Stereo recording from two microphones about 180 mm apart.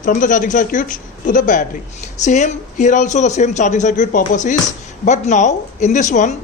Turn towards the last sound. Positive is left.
turn(degrees=40)  # may be behind; listen again after turning